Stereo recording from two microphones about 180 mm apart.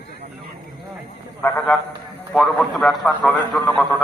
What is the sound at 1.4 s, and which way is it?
A man's voice, 10° left (ahead or behind).